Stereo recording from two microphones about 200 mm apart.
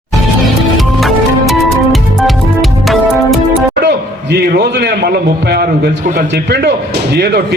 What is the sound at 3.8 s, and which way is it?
A man's voice, 55° right (ahead or behind).